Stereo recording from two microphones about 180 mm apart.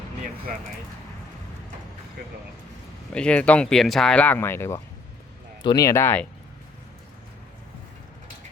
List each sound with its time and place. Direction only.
3.1 s speech: 5° left (ahead or behind)